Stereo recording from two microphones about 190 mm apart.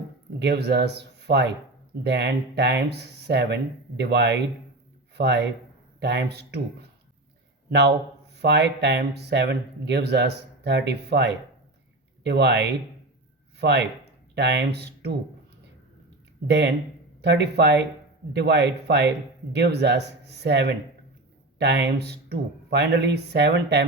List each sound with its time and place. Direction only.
0.3 s speech: 60° right (ahead or behind)
7.7 s speech: 60° right (ahead or behind)
16.5 s speech: 65° right (ahead or behind)